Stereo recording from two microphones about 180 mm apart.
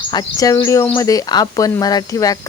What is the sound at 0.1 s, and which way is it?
Speech, 20° left (ahead or behind).